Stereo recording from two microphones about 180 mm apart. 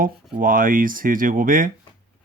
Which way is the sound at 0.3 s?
50° right (ahead or behind).